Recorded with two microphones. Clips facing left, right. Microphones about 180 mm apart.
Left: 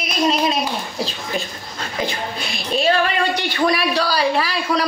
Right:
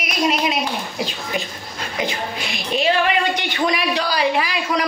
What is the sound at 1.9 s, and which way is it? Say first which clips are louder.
Speech: even; 15° right (ahead or behind).